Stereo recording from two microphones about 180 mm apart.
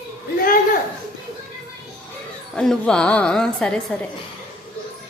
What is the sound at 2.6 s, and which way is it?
Speech, 5° left (ahead or behind).